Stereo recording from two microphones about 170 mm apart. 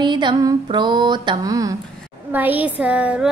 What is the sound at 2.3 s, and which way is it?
A woman's voice, 10° right (ahead or behind).